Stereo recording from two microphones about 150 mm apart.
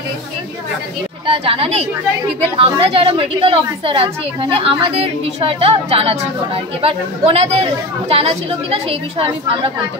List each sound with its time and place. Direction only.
1.2 s a woman's voice: 40° right (ahead or behind)